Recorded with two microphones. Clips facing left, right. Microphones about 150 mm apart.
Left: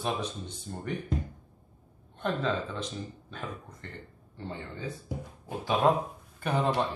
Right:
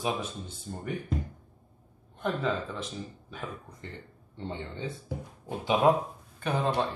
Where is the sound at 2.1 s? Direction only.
5° right (ahead or behind).